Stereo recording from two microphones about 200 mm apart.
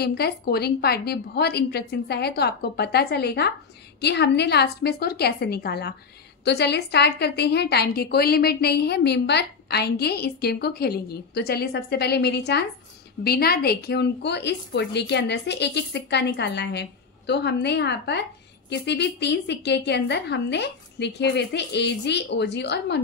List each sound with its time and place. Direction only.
0.0 s a woman's voice: 50° left (ahead or behind)